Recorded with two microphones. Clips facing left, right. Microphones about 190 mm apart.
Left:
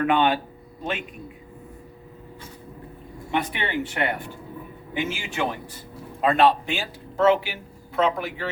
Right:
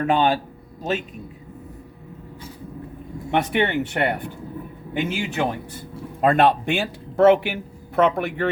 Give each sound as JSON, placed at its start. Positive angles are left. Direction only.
{"t": 0.0, "sound": "speech", "side_deg": -40}
{"t": 3.3, "sound": "a man's voice", "side_deg": -65}